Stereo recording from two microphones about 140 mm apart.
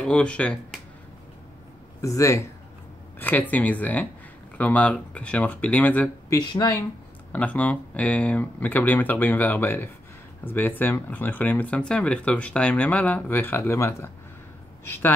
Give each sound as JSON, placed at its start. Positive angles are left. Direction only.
{"t": 0.0, "sound": "speech", "side_deg": 5}
{"t": 2.0, "sound": "speech", "side_deg": 25}
{"t": 6.4, "sound": "speech", "side_deg": 30}
{"t": 7.3, "sound": "speech", "side_deg": 10}